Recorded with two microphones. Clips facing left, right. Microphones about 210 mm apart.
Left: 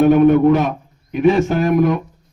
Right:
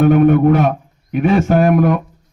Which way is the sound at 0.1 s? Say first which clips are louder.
Even; 55° right (ahead or behind).